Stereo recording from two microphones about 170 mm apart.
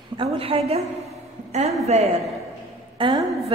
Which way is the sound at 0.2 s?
35° right (ahead or behind).